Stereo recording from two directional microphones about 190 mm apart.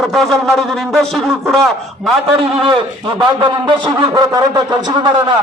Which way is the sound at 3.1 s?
25° right (ahead or behind).